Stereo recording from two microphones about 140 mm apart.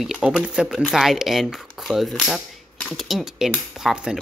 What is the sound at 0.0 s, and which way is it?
Speech, 5° right (ahead or behind).